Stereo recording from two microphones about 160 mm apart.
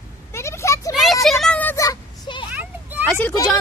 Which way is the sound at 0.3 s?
15° left (ahead or behind).